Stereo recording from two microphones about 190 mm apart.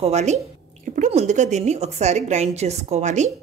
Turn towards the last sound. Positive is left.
turn(degrees=-40)  # may be behind; listen again after turning